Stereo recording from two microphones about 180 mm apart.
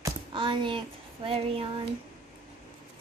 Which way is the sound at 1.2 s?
30° right (ahead or behind).